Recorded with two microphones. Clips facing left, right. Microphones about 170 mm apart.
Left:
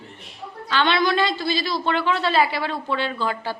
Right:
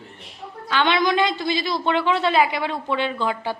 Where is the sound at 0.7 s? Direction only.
15° right (ahead or behind).